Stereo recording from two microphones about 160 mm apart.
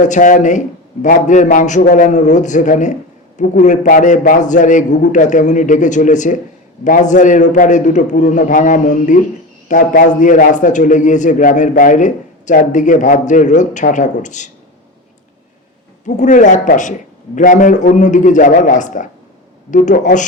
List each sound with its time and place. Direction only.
0.0 s a man's voice: 50° left (ahead or behind)
16.0 s a man's voice: 50° left (ahead or behind)